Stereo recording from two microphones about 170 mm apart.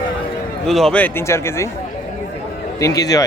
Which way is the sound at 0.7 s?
Centre (ahead or behind).